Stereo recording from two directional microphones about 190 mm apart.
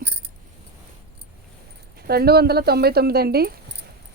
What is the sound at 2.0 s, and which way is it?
Speech, 55° right (ahead or behind).